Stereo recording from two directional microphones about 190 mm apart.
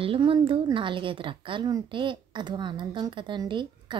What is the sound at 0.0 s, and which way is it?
A woman's voice, 30° right (ahead or behind).